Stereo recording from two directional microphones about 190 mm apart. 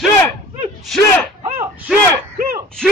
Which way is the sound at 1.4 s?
15° right (ahead or behind).